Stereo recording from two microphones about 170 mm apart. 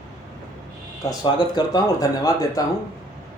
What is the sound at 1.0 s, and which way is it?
Speech, 25° left (ahead or behind).